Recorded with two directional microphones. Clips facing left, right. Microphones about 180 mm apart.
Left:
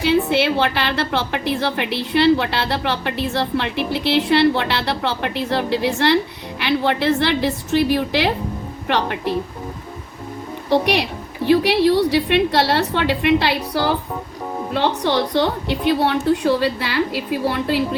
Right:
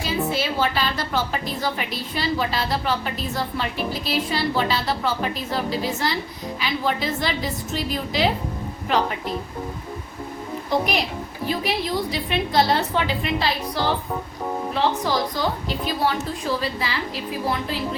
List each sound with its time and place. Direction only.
0.0 s a woman's voice: 70° left (ahead or behind)
10.7 s a woman's voice: 70° left (ahead or behind)